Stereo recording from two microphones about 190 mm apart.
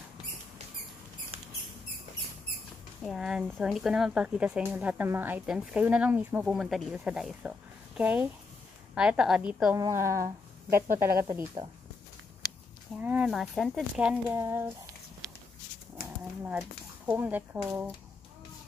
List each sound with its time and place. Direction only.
3.0 s speech: centre (ahead or behind); by 11.7 s 20° right (ahead or behind)
12.9 s speech: 5° right (ahead or behind)
16.4 s speech: 10° right (ahead or behind)